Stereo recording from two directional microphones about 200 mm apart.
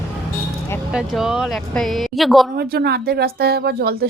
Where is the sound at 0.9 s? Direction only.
Centre (ahead or behind).